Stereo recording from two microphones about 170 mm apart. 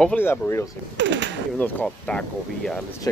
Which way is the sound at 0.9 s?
90° right.